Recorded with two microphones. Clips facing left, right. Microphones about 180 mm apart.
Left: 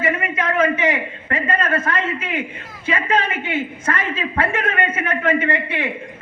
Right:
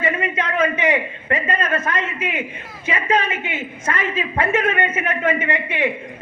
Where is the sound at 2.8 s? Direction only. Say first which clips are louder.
Even; 20° right (ahead or behind).